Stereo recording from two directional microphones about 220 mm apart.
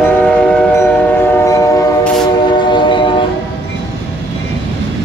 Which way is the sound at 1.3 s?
15° left (ahead or behind).